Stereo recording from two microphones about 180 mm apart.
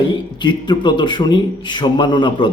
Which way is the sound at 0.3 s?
25° left (ahead or behind).